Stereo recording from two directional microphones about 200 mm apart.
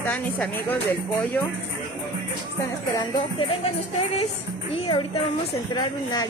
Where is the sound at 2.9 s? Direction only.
25° left (ahead or behind).